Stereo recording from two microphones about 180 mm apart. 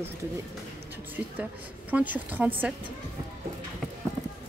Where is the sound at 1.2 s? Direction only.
10° right (ahead or behind).